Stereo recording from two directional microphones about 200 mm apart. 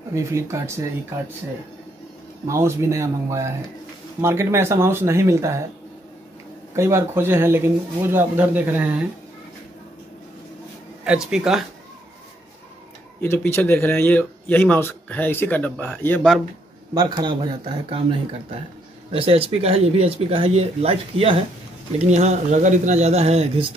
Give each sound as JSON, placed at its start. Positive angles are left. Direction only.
{"t": 0.1, "sound": "speech", "side_deg": -15}
{"t": 2.4, "sound": "speech", "side_deg": -15}
{"t": 6.7, "sound": "speech", "side_deg": -15}
{"t": 11.1, "sound": "speech", "side_deg": -5}
{"t": 13.2, "sound": "a man's voice", "side_deg": 10}
{"t": 16.9, "sound": "speech", "side_deg": -20}
{"t": 19.1, "sound": "speech", "side_deg": -30}